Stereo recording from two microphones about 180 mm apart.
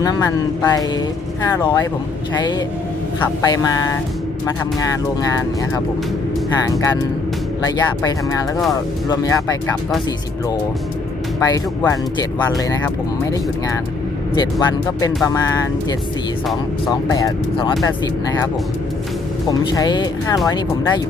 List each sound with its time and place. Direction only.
0.0 s speech: 20° left (ahead or behind)
5.3 s speech: 20° left (ahead or behind)
11.3 s speech: 20° left (ahead or behind)
14.3 s speech: 25° left (ahead or behind)
19.5 s speech: 20° left (ahead or behind)